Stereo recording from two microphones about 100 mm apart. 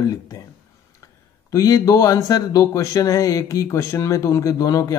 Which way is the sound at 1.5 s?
35° left (ahead or behind).